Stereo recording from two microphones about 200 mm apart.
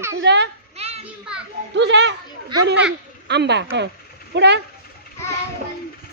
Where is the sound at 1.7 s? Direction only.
60° right (ahead or behind).